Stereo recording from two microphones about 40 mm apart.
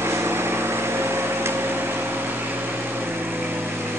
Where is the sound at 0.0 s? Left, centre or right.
Right.